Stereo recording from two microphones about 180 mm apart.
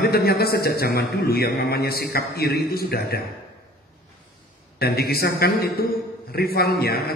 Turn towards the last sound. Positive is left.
turn(degrees=60)  # may be behind; listen again after turning